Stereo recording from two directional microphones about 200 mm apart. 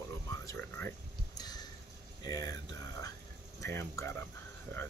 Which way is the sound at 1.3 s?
20° left (ahead or behind).